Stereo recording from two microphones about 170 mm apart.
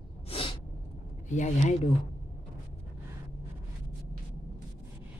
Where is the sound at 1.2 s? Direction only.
45° left (ahead or behind).